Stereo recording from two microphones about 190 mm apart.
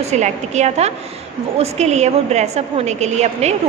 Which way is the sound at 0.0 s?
35° right (ahead or behind).